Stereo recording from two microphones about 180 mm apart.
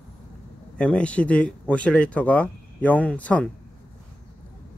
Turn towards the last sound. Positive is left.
turn(degrees=5)  # may be behind; listen again after turning